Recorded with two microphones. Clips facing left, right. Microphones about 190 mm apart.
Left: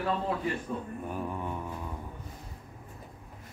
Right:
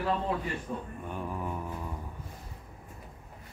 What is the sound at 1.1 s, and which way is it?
Mantra, centre (ahead or behind).